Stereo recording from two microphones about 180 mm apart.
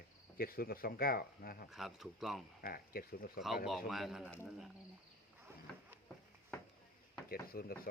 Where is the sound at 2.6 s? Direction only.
55° left (ahead or behind).